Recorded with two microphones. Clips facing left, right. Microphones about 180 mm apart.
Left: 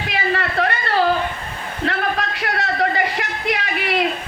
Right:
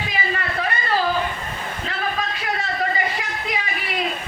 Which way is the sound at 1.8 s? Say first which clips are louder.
Left 6 dB; 70° left (ahead or behind).